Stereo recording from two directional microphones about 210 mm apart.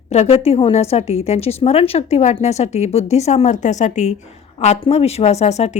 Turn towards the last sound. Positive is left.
turn(degrees=30)  # may be behind; listen again after turning